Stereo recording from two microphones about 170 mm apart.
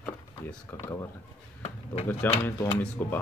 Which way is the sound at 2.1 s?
10° left (ahead or behind).